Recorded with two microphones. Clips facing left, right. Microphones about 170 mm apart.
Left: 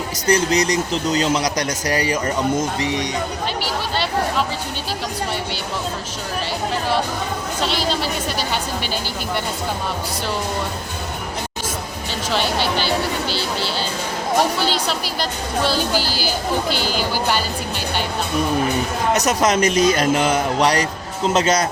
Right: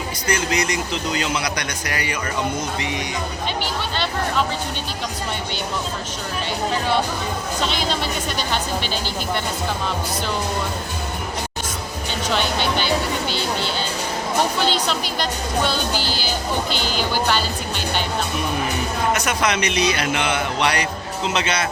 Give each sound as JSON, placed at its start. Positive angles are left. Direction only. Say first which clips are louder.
{"t": 0.3, "sound": "a man's voice", "louder": "left 5 dB", "side_deg": 40}
{"t": 7.6, "sound": "speech", "louder": "left 2 dB", "side_deg": 5}
{"t": 14.8, "sound": "speech", "louder": "even", "side_deg": 5}
{"t": 19.1, "sound": "a man's voice", "louder": "left 4 dB", "side_deg": 40}